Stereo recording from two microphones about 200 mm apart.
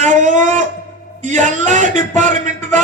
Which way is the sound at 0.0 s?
40° right (ahead or behind).